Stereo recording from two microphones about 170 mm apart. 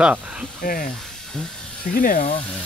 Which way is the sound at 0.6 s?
55° left (ahead or behind).